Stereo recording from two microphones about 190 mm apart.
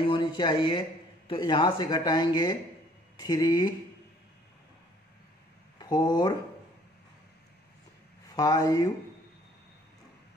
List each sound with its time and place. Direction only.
0.0 s a man's voice: 25° left (ahead or behind)
5.8 s speech: 20° left (ahead or behind)
8.4 s speech: 20° left (ahead or behind)